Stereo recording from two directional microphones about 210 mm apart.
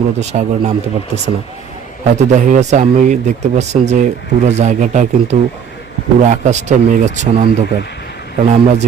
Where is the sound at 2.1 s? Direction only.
35° right (ahead or behind).